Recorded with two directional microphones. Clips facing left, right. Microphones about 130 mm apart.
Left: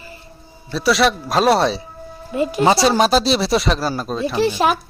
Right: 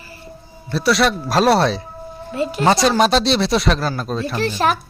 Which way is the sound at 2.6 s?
5° left (ahead or behind).